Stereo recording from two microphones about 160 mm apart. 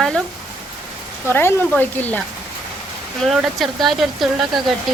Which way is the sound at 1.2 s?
15° left (ahead or behind).